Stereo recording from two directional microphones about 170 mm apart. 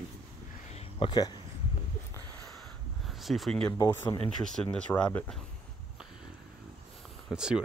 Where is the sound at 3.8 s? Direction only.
20° left (ahead or behind).